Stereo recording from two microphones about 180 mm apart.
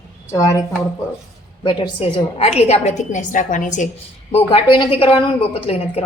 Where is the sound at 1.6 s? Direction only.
30° left (ahead or behind).